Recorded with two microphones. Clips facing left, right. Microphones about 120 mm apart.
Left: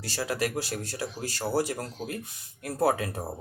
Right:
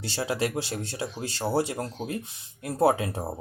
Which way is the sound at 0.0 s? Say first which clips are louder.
Right 2 dB; 25° right (ahead or behind).